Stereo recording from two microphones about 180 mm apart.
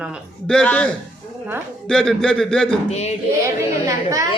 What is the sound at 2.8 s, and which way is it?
Speech, 35° left (ahead or behind).